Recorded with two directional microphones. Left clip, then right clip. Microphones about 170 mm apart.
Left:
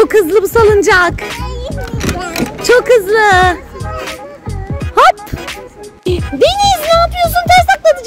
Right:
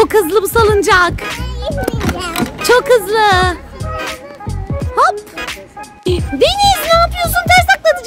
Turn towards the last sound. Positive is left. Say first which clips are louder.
# left 2 dB
turn(degrees=-10)  # may be behind; listen again after turning